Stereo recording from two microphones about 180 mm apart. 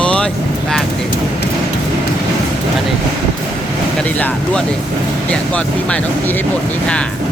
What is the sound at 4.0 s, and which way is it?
Speech, 10° left (ahead or behind).